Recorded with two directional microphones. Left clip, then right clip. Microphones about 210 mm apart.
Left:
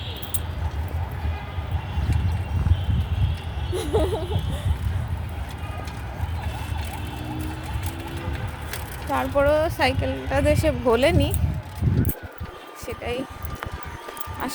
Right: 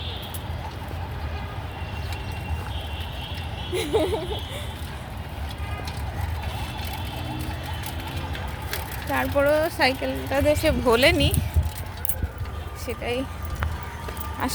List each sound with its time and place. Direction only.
3.8 s speech: 15° left (ahead or behind)
9.0 s speech: 15° left (ahead or behind)
12.9 s speech: centre (ahead or behind)
14.4 s speech: 15° right (ahead or behind)